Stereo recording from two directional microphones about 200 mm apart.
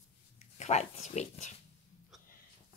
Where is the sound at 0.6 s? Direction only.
35° left (ahead or behind).